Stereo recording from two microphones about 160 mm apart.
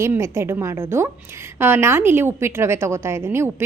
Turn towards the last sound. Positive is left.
turn(degrees=-15)  # may be behind; listen again after turning